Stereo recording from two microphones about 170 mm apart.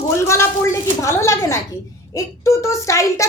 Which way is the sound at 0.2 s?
15° left (ahead or behind).